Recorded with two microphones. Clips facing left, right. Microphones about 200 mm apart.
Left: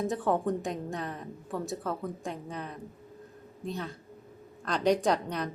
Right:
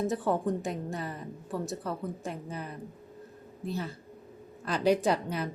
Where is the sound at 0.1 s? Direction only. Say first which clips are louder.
Even; centre (ahead or behind).